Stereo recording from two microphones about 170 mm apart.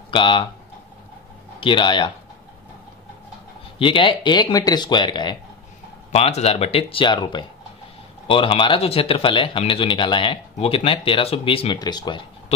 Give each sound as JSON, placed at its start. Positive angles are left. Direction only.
{"t": 0.1, "sound": "speech", "side_deg": 30}
{"t": 1.6, "sound": "speech", "side_deg": 30}
{"t": 3.8, "sound": "speech", "side_deg": 30}
{"t": 6.1, "sound": "speech", "side_deg": 40}